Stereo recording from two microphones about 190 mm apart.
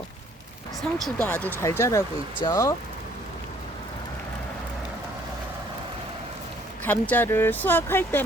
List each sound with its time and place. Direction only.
1.0 s speech: 5° left (ahead or behind)
6.8 s speech: 10° left (ahead or behind)